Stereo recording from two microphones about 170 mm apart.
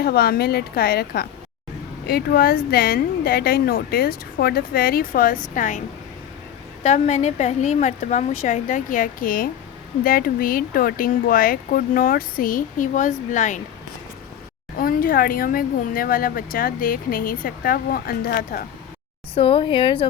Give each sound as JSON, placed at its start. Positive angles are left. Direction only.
{"t": 0.0, "sound": "speech", "side_deg": 65}
{"t": 6.8, "sound": "a woman's voice", "side_deg": 45}
{"t": 14.8, "sound": "speech", "side_deg": 55}
{"t": 19.3, "sound": "a woman's voice", "side_deg": 30}